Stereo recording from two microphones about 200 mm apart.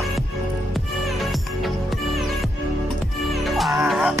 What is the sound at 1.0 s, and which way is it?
Music, centre (ahead or behind).